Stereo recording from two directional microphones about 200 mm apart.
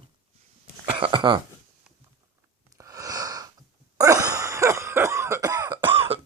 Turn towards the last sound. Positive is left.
turn(degrees=-30)  # may be behind; listen again after turning